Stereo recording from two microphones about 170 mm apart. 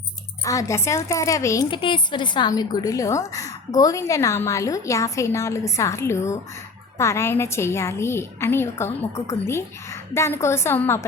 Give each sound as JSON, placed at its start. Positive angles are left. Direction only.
{"t": 0.4, "sound": "a woman's voice", "side_deg": 20}
{"t": 1.7, "sound": "a woman's voice", "side_deg": 30}